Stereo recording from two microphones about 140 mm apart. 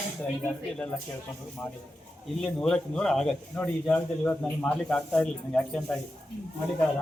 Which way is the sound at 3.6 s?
15° left (ahead or behind).